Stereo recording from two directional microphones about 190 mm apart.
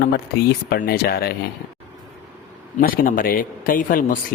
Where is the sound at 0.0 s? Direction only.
55° left (ahead or behind).